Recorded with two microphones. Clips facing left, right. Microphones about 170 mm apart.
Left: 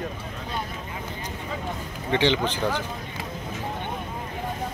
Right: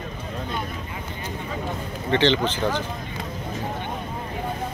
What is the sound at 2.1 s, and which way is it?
Speech, 10° left (ahead or behind).